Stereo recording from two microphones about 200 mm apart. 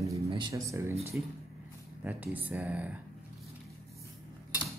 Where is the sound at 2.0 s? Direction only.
10° right (ahead or behind).